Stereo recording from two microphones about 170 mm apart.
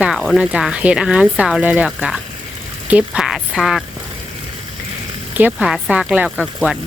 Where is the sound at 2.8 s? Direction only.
5° right (ahead or behind).